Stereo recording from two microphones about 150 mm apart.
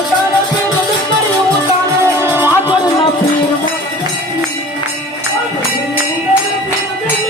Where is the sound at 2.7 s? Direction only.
30° left (ahead or behind).